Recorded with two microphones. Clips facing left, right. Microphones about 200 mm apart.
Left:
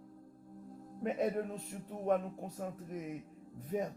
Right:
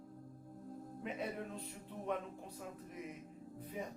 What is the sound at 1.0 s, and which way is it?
Male singing, 45° left (ahead or behind).